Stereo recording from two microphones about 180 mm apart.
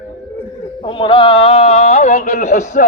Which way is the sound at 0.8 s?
25° left (ahead or behind).